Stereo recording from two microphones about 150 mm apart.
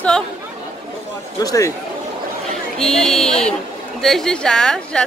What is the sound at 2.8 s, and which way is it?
A woman's voice, 5° left (ahead or behind).